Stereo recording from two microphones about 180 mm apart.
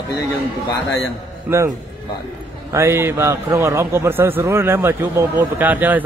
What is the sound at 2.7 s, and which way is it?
A man's voice, 15° right (ahead or behind).